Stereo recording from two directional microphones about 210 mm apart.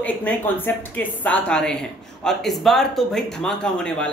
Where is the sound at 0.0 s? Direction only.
10° left (ahead or behind).